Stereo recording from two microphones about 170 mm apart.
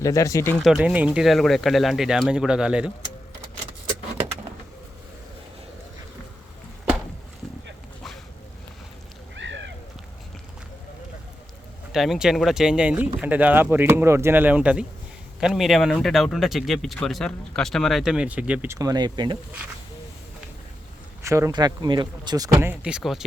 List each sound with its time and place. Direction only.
0.0 s speech: 20° left (ahead or behind)
0.6 s speech: 5° right (ahead or behind)
9.3 s a sound: 90° right
11.9 s speech: centre (ahead or behind)
18.8 s speech: 25° right (ahead or behind)
21.2 s speech: 20° right (ahead or behind)
22.6 s speech: 10° right (ahead or behind)